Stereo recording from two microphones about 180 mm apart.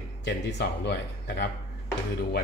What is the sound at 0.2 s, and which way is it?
A man's voice, 70° left (ahead or behind).